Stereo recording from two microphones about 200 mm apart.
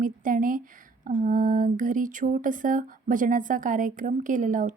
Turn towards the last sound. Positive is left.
turn(degrees=-40)  # may be behind; listen again after turning